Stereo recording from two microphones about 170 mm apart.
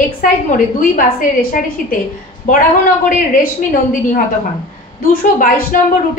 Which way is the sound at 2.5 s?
50° left (ahead or behind).